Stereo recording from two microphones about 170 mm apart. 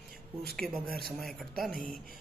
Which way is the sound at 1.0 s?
Centre (ahead or behind).